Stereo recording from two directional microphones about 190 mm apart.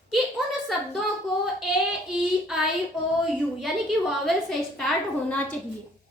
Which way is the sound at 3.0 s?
15° left (ahead or behind).